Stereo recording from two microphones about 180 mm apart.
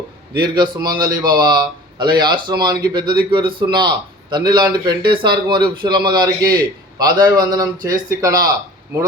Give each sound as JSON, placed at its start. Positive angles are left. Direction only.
{"t": 0.3, "sound": "a man's voice", "side_deg": -25}